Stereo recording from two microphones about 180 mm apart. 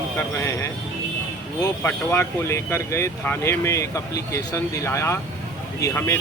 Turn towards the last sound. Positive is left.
turn(degrees=15)  # may be behind; listen again after turning